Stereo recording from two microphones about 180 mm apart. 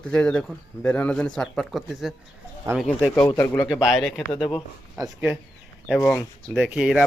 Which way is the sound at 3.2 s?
20° left (ahead or behind).